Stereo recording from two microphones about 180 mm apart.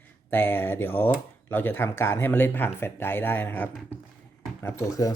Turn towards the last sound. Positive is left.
turn(degrees=20)  # may be behind; listen again after turning